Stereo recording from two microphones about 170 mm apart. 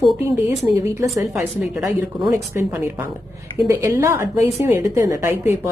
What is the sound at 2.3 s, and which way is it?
A woman's voice, 15° right (ahead or behind).